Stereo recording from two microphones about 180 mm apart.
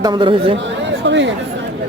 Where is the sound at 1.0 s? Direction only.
80° right.